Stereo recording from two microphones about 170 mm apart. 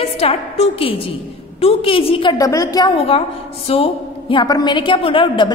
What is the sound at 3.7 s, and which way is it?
A woman's voice, 35° left (ahead or behind).